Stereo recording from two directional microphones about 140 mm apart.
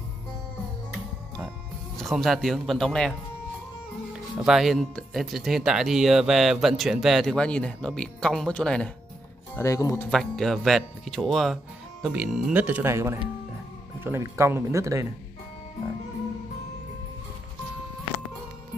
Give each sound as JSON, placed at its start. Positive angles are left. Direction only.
{"t": 2.0, "sound": "speech", "side_deg": 0}
{"t": 9.6, "sound": "speech", "side_deg": 25}
{"t": 10.0, "sound": "speech", "side_deg": 5}